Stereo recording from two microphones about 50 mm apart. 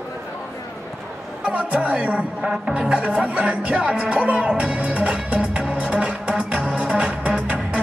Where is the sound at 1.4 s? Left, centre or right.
Right.